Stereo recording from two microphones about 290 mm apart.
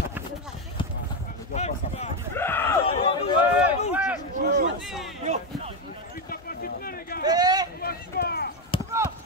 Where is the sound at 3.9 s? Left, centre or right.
Centre.